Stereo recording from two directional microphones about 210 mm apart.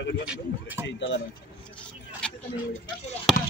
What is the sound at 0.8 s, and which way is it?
Speech, 60° left (ahead or behind).